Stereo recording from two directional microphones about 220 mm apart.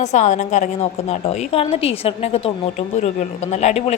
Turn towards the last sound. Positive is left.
turn(degrees=30)  # may be behind; listen again after turning